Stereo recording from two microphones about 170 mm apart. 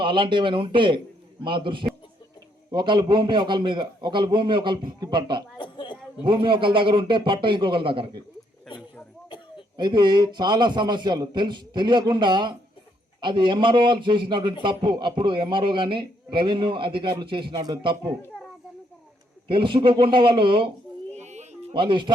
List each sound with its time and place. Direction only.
0.0 s a man's voice: 30° right (ahead or behind)
5.5 s a sound: 30° left (ahead or behind)
6.2 s a man's voice: 30° right (ahead or behind)
9.7 s a man's voice: 25° right (ahead or behind)
19.5 s a man's voice: 30° right (ahead or behind)
21.2 s a sound: 40° right (ahead or behind)
21.7 s a man's voice: 30° right (ahead or behind)